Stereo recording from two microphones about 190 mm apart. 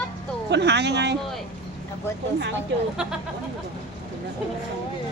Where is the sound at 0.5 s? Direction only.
65° right (ahead or behind).